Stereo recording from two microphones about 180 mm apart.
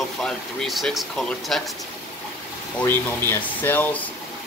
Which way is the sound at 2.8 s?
10° left (ahead or behind).